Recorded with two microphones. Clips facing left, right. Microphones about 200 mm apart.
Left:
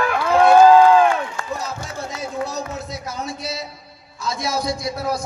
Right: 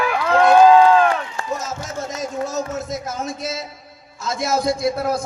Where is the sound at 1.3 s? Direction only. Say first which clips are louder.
Right 2 dB; 45° right (ahead or behind).